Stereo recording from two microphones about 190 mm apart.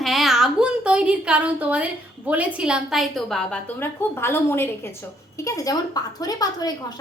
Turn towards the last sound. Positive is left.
turn(degrees=20)  # may be behind; listen again after turning